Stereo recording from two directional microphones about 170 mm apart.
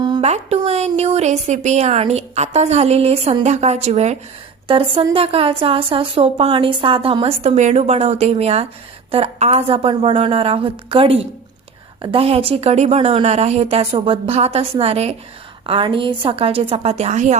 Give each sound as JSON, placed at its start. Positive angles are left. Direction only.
{"t": 0.2, "sound": "a woman's voice", "side_deg": -40}